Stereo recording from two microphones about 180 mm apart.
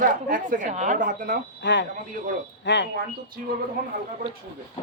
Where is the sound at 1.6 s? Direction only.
80° left.